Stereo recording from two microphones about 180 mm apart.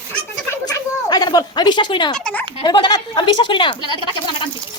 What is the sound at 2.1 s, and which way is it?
Speech, 5° left (ahead or behind).